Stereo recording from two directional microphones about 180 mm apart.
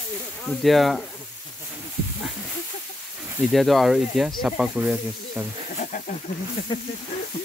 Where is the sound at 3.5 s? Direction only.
Centre (ahead or behind).